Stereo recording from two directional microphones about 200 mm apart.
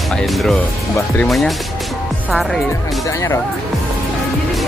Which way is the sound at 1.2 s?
Centre (ahead or behind).